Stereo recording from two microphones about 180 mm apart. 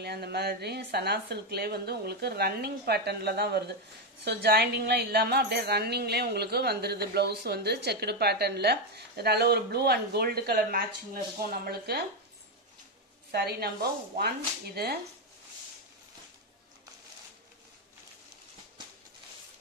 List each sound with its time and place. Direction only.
0.0 s a woman's voice: 65° right (ahead or behind)
13.3 s a woman's voice: 60° right (ahead or behind)